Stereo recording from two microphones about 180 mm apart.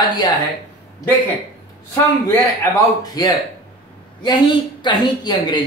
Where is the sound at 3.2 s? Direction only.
20° left (ahead or behind).